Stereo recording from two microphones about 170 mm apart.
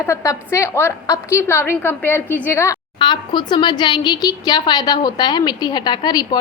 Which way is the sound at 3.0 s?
25° left (ahead or behind).